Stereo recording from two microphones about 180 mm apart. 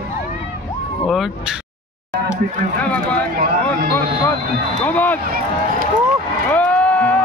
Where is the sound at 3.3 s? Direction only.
55° right (ahead or behind).